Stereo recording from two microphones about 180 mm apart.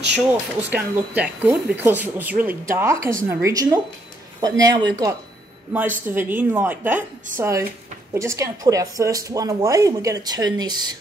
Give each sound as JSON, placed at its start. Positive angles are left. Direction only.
{"t": 0.7, "sound": "speech", "side_deg": -5}
{"t": 5.7, "sound": "speech", "side_deg": -10}